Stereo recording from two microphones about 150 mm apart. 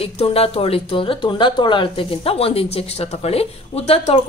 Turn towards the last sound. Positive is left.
turn(degrees=40)  # may be behind; listen again after turning